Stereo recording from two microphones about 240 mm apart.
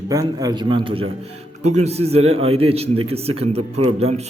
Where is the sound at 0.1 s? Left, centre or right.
Centre.